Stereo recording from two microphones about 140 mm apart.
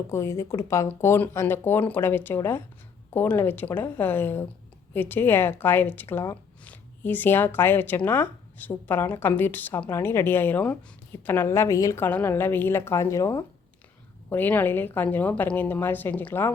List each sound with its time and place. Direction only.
0.1 s speech: 20° left (ahead or behind)